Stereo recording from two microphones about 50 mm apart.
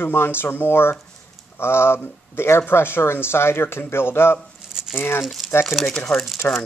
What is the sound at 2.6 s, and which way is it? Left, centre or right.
Speech, left.